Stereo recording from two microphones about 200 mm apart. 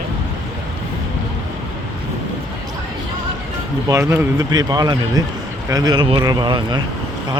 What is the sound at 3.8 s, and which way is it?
Speech, 15° right (ahead or behind).